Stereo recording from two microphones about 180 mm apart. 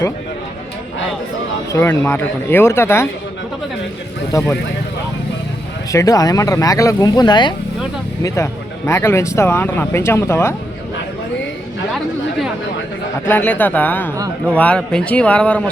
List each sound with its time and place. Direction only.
1.7 s speech: 15° left (ahead or behind)
4.3 s speech: 15° left (ahead or behind)
5.9 s speech: 20° left (ahead or behind)
13.2 s speech: 10° left (ahead or behind)